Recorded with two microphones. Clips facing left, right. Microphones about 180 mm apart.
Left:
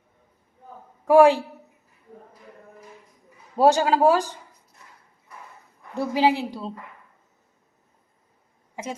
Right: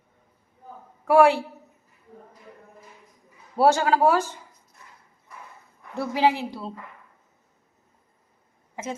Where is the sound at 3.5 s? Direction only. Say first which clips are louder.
Left 1 dB; 15° left (ahead or behind).